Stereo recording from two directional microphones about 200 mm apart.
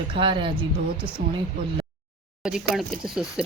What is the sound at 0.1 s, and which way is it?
Speech, 25° right (ahead or behind).